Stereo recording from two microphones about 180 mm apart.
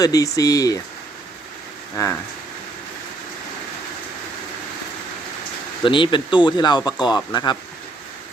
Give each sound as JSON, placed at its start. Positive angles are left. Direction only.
{"t": 0.0, "sound": "speech", "side_deg": 20}
{"t": 2.0, "sound": "speech", "side_deg": 15}
{"t": 5.8, "sound": "speech", "side_deg": 25}